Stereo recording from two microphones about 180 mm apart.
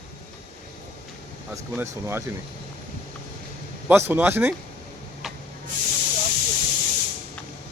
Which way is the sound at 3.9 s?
15° right (ahead or behind).